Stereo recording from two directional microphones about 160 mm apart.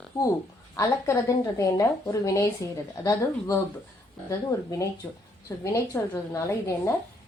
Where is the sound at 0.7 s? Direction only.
20° left (ahead or behind).